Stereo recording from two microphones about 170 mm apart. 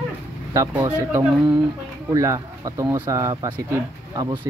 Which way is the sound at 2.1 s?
15° right (ahead or behind).